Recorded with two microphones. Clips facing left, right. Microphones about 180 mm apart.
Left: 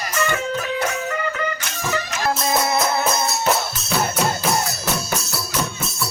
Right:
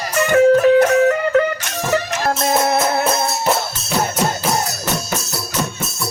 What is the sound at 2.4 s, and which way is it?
Music, 50° right (ahead or behind).